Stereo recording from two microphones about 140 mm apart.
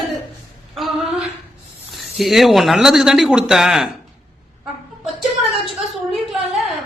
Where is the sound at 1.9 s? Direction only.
Centre (ahead or behind).